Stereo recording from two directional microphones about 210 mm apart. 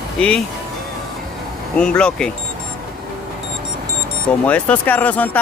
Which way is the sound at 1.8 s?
5° left (ahead or behind).